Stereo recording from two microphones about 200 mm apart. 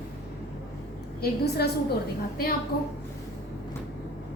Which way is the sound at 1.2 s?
55° left (ahead or behind).